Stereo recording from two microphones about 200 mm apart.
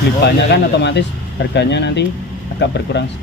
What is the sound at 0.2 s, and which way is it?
Speech, 60° left (ahead or behind).